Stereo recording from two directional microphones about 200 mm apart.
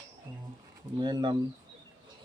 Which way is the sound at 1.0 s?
20° right (ahead or behind).